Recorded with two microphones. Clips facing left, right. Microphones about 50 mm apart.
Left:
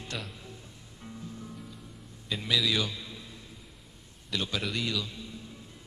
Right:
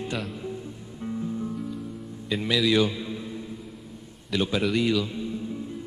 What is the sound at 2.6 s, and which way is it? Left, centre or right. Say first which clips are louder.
Mantra: right 8 dB; centre.